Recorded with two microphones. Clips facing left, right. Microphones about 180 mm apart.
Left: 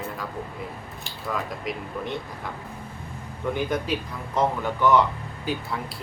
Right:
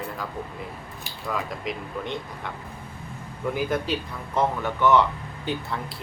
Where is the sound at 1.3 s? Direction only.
Centre (ahead or behind).